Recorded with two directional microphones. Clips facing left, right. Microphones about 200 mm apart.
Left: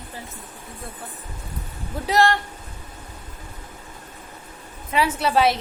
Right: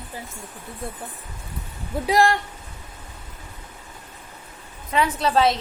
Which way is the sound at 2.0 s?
10° right (ahead or behind).